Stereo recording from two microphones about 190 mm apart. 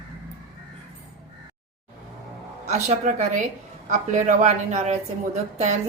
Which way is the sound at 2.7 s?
35° right (ahead or behind).